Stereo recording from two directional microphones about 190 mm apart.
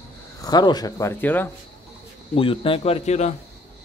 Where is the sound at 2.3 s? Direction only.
30° left (ahead or behind).